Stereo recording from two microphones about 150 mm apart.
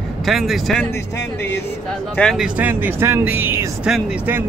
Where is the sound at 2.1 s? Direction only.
5° left (ahead or behind).